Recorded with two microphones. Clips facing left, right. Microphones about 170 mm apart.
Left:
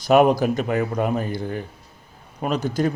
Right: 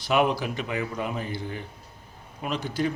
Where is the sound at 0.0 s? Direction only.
45° left (ahead or behind).